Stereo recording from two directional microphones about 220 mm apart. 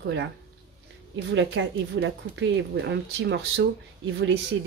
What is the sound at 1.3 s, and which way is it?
A woman's voice, 55° right (ahead or behind).